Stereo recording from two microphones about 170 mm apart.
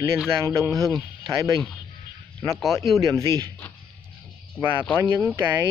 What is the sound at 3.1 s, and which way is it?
Speech, 20° right (ahead or behind).